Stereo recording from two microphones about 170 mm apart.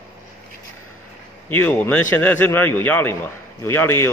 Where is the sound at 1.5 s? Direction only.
10° left (ahead or behind).